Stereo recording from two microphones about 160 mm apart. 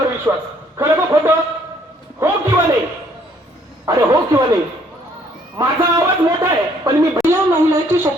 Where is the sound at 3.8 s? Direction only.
25° right (ahead or behind).